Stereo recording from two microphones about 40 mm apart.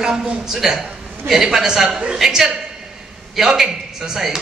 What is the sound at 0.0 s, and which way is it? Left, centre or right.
A woman's voice, centre.